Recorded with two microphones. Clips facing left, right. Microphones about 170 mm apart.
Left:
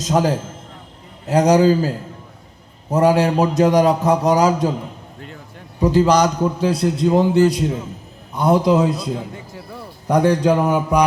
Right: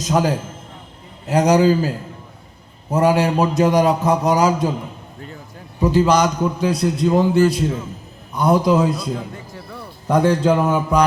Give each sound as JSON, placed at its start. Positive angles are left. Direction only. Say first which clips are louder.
{"t": 0.1, "sound": "a man's voice", "louder": "left 1 dB", "side_deg": 35}
{"t": 2.9, "sound": "a man's voice", "louder": "left 1 dB", "side_deg": 40}
{"t": 5.8, "sound": "a man's voice", "louder": "left 1 dB", "side_deg": 35}